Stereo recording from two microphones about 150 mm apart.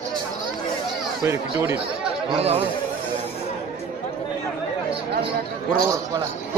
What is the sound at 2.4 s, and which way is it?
Speech, 40° right (ahead or behind).